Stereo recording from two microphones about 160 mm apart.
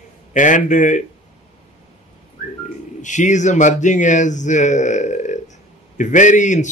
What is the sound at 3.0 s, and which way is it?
Speech, 50° left (ahead or behind).